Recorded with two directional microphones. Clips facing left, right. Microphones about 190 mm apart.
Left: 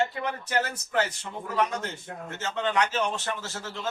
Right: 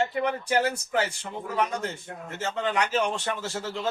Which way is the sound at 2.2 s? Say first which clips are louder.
Right 1 dB; 10° right (ahead or behind).